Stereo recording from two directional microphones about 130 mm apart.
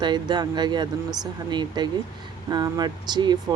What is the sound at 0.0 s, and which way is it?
Speech, 35° right (ahead or behind).